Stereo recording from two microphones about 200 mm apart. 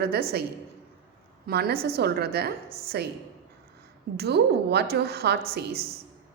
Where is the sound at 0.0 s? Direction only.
50° right (ahead or behind).